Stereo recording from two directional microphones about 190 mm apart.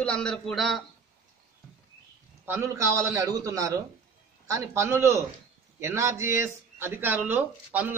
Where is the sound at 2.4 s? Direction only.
10° right (ahead or behind).